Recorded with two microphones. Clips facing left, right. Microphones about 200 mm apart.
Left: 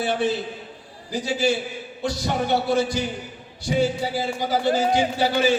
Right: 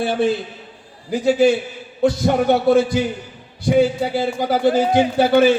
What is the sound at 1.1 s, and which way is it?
A man's voice, 55° right (ahead or behind).